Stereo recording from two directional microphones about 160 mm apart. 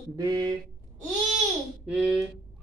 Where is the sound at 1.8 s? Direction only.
5° right (ahead or behind).